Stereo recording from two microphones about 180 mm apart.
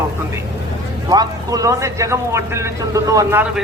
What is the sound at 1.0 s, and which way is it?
A man's voice, 20° right (ahead or behind).